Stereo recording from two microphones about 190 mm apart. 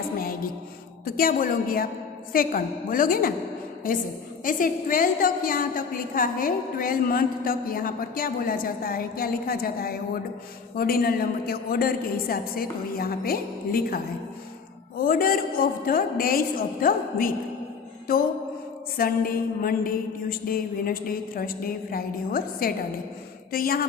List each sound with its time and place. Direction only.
1.0 s a woman's voice: 50° left (ahead or behind)